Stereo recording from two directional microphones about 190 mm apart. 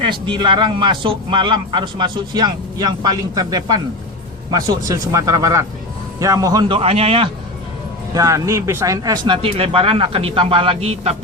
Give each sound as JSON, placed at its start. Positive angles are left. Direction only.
{"t": 0.0, "sound": "a man's voice", "side_deg": -25}
{"t": 4.9, "sound": "a man's voice", "side_deg": -15}
{"t": 8.1, "sound": "a man's voice", "side_deg": -15}